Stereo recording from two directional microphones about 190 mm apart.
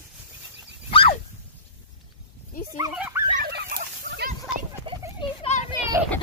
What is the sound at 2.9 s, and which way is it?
Speech, 5° right (ahead or behind).